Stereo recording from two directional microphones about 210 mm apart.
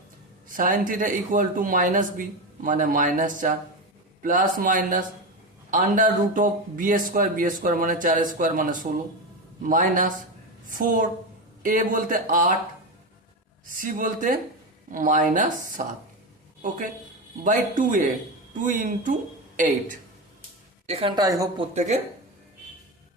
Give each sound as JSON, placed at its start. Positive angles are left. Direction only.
{"t": 0.4, "sound": "speech", "side_deg": -40}
{"t": 13.7, "sound": "speech", "side_deg": -40}
{"t": 17.4, "sound": "speech", "side_deg": -40}
{"t": 20.8, "sound": "a woman's voice", "side_deg": -30}
{"t": 21.2, "sound": "speech", "side_deg": -15}